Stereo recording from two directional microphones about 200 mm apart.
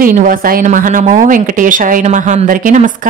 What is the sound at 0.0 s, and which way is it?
Speech, 45° right (ahead or behind).